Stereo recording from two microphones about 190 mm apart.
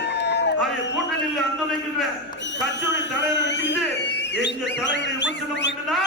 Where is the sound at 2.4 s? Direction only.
70° left (ahead or behind).